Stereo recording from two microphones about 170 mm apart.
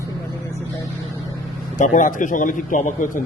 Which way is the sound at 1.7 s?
50° left (ahead or behind).